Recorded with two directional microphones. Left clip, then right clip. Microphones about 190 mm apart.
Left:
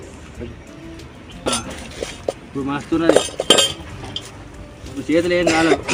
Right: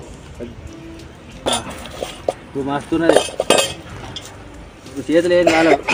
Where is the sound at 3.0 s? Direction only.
10° right (ahead or behind).